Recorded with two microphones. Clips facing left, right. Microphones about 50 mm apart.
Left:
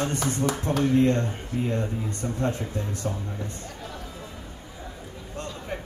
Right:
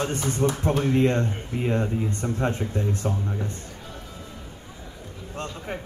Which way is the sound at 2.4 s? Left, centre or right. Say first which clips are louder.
Right 2 dB; right.